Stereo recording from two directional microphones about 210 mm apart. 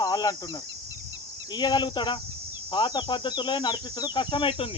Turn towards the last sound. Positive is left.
turn(degrees=25)  # may be behind; listen again after turning